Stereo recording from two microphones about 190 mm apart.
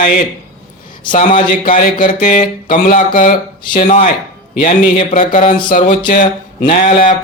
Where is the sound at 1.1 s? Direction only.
45° left (ahead or behind).